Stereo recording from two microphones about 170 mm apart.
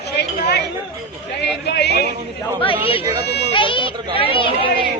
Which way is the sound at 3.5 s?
30° left (ahead or behind).